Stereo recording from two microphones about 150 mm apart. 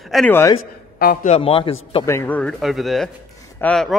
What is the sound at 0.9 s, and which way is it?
Speech, 80° left.